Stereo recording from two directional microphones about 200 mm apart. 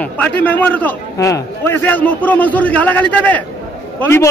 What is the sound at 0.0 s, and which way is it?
A man's voice, 5° left (ahead or behind).